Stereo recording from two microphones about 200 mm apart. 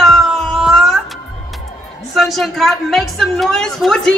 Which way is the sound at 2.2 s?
Centre (ahead or behind).